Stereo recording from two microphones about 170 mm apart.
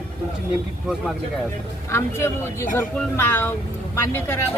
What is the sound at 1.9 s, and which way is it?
Speech, 15° left (ahead or behind).